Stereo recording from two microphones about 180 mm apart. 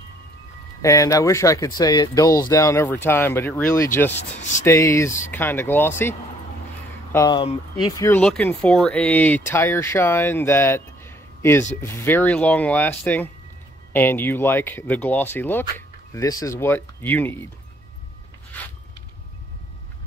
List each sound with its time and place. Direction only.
0.8 s speech: 15° left (ahead or behind)
4.2 s speech: 40° left (ahead or behind)
4.6 s speech: 15° left (ahead or behind)